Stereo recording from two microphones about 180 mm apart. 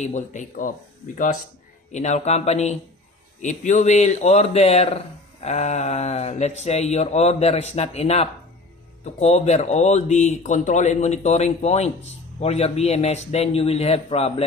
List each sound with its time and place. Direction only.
0.0 s speech: 45° left (ahead or behind)